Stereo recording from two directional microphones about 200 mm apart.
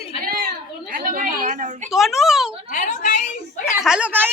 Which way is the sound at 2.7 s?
40° left (ahead or behind).